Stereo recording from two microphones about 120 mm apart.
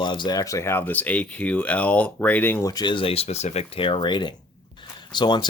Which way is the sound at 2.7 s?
35° left (ahead or behind).